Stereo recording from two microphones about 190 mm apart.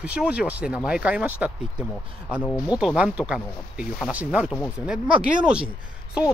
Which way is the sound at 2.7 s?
5° right (ahead or behind).